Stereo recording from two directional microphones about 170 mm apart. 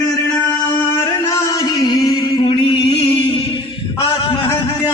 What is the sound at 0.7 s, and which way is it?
Music, 20° left (ahead or behind).